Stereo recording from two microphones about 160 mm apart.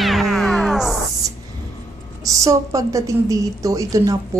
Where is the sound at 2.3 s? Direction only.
20° right (ahead or behind).